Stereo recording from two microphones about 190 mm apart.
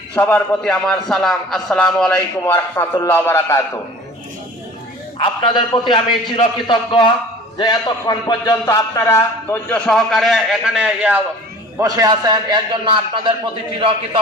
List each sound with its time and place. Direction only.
0.1 s a man's voice: 10° left (ahead or behind)
5.2 s a man's voice: 25° left (ahead or behind); by 11.2 s 5° right (ahead or behind)
11.8 s a man's voice: 20° right (ahead or behind)